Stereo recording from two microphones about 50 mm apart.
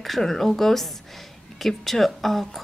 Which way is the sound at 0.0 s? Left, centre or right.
Centre.